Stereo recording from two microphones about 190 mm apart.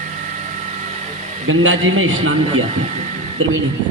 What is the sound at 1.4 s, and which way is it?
Speech, 90° right.